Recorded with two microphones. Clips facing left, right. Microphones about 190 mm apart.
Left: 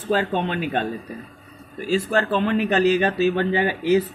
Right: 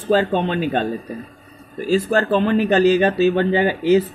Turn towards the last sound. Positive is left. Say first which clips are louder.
# right 4 dB
turn(degrees=-30)  # may be behind; listen again after turning